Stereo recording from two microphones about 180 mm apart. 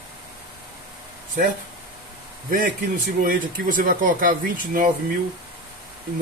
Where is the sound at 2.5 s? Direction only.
50° right (ahead or behind).